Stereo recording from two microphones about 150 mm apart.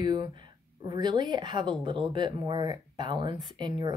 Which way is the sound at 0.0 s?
30° right (ahead or behind).